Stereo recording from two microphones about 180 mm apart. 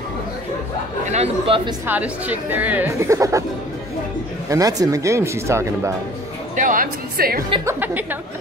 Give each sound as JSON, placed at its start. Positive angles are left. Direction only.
{"t": 1.1, "sound": "speech", "side_deg": -35}
{"t": 1.9, "sound": "speech", "side_deg": -10}
{"t": 4.5, "sound": "speech", "side_deg": -20}
{"t": 6.5, "sound": "speech", "side_deg": -45}
{"t": 7.6, "sound": "speech", "side_deg": -10}